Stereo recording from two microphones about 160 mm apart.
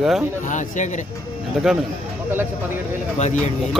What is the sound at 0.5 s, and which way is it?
Speech, 50° left (ahead or behind).